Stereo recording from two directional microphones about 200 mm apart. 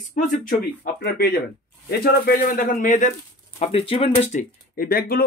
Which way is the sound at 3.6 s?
30° left (ahead or behind).